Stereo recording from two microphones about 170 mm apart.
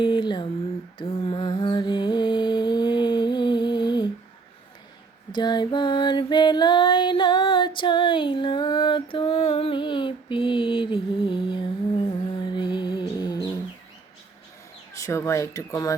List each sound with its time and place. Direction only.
0.0 s a sound: 30° left (ahead or behind)
0.9 s music: 30° left (ahead or behind)
5.3 s female singing: 25° left (ahead or behind)
14.9 s speech: 20° left (ahead or behind)